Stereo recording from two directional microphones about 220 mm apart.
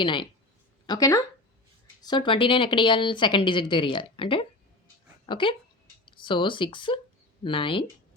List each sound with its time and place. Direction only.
0.0 s speech: 20° left (ahead or behind)